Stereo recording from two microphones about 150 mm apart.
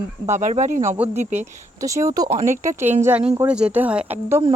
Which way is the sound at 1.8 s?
20° right (ahead or behind).